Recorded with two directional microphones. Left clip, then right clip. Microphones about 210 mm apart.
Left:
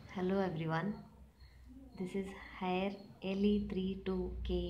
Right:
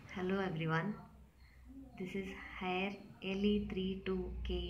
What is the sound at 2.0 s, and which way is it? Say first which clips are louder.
A woman's voice: left 2 dB; 35° left (ahead or behind).